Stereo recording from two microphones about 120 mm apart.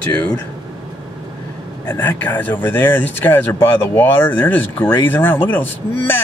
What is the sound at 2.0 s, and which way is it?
Speech, 15° left (ahead or behind).